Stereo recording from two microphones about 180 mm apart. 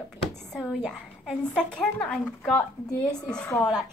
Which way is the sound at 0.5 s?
5° left (ahead or behind).